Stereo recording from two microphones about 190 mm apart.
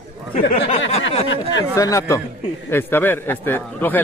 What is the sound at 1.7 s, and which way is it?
Speech, 15° left (ahead or behind).